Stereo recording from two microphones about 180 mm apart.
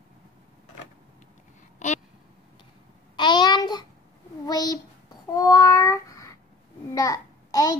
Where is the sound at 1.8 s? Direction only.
40° left (ahead or behind).